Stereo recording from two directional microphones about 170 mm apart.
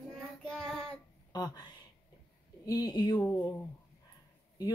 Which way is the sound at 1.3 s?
25° left (ahead or behind).